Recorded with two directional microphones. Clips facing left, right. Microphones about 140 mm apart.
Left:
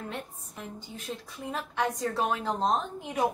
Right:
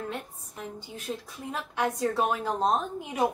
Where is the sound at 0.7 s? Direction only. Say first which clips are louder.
Right 3 dB; centre (ahead or behind).